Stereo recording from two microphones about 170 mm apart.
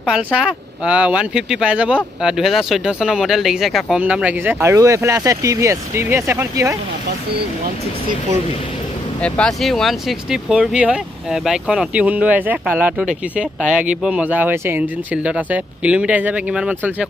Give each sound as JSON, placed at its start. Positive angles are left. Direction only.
{"t": 0.0, "sound": "speech", "side_deg": -5}
{"t": 9.2, "sound": "speech", "side_deg": 5}